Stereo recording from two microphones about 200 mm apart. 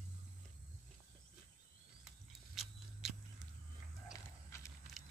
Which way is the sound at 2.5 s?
Centre (ahead or behind).